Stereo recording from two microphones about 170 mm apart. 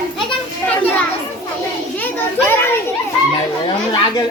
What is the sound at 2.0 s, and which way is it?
Speech, 10° left (ahead or behind).